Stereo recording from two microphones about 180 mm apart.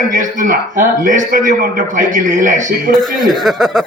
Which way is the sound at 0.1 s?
45° right (ahead or behind).